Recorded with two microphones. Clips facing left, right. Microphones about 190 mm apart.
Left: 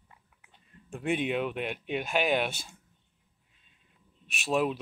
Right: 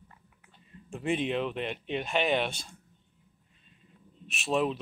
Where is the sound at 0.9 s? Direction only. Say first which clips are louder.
Even; centre (ahead or behind).